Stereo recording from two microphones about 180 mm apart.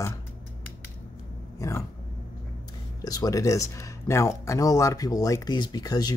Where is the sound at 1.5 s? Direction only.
15° left (ahead or behind).